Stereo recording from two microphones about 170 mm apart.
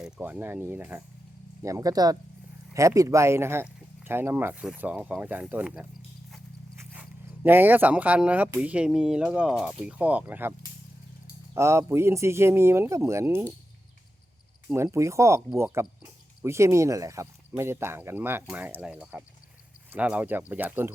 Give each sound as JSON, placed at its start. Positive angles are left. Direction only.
{"t": 0.0, "sound": "speech", "side_deg": -10}
{"t": 6.7, "sound": "a sound", "side_deg": -10}
{"t": 8.6, "sound": "speech", "side_deg": -5}
{"t": 11.5, "sound": "speech", "side_deg": -15}
{"t": 14.7, "sound": "speech", "side_deg": -15}